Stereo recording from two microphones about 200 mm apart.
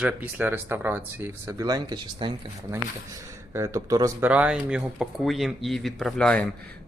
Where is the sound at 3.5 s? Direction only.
15° right (ahead or behind).